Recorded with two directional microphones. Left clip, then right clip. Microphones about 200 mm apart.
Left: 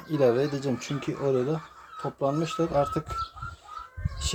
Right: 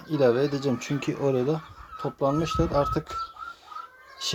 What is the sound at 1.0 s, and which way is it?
Speech, 20° right (ahead or behind).